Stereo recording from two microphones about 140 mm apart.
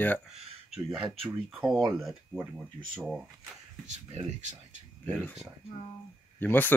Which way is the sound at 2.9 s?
Centre (ahead or behind).